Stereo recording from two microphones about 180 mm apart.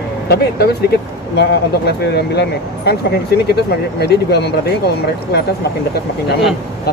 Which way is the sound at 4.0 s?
65° left (ahead or behind).